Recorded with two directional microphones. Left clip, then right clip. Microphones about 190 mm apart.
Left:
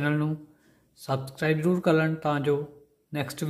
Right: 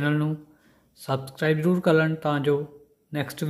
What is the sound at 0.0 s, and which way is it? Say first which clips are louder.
A man's voice: right 2 dB; 5° right (ahead or behind).